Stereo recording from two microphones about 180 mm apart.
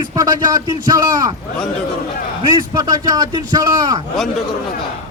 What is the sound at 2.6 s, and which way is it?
Speech, 20° right (ahead or behind).